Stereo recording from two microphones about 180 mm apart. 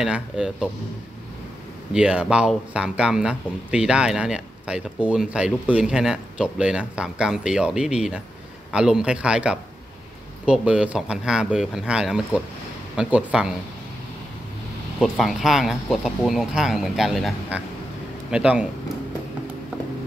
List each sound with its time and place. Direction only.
0.0 s speech: 5° right (ahead or behind)
2.0 s speech: 5° right (ahead or behind)
15.0 s speech: centre (ahead or behind)